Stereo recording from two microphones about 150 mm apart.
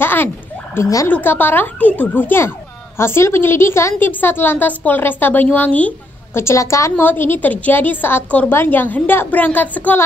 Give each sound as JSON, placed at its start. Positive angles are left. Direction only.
{"t": 0.0, "sound": "a woman's voice", "side_deg": 15}